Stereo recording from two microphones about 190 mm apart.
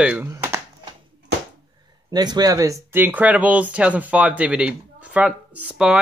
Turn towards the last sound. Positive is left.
turn(degrees=-5)  # may be behind; listen again after turning